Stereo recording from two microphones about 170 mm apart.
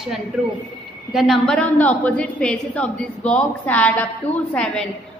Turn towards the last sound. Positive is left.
turn(degrees=5)  # may be behind; listen again after turning